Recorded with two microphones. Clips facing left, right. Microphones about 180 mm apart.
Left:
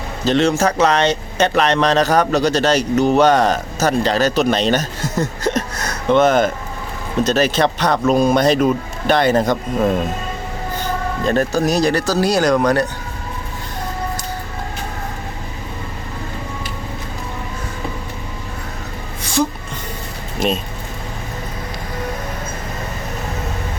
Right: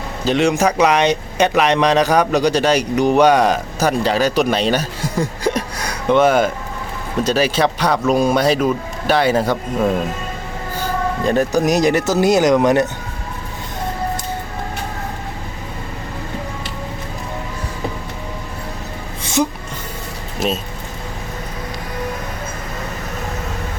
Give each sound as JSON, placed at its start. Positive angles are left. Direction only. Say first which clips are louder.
{"t": 0.3, "sound": "speech", "louder": "even", "side_deg": -10}
{"t": 11.3, "sound": "speech", "louder": "right 1 dB", "side_deg": -15}
{"t": 19.2, "sound": "a sound", "louder": "even", "side_deg": -20}
{"t": 20.4, "sound": "speech", "louder": "left 1 dB", "side_deg": -5}